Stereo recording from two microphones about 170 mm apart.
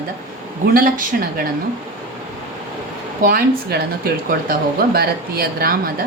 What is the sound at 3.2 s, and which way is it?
Speech, 60° right (ahead or behind).